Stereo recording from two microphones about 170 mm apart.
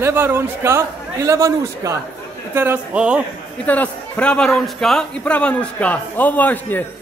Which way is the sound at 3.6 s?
10° left (ahead or behind).